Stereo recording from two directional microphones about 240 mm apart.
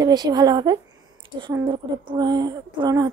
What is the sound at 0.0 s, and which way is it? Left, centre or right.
Speech, centre.